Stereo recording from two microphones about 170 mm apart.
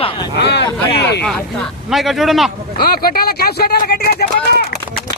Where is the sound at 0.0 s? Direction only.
30° left (ahead or behind).